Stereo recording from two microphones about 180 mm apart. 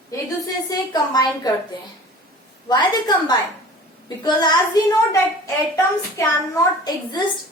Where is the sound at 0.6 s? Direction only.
20° left (ahead or behind).